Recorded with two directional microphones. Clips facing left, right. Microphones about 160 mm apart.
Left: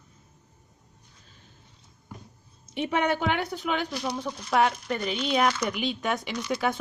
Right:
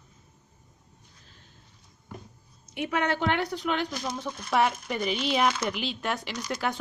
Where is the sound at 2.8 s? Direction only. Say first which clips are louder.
Left 1 dB; 15° left (ahead or behind).